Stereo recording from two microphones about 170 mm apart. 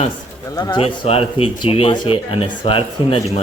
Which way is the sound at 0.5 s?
25° left (ahead or behind).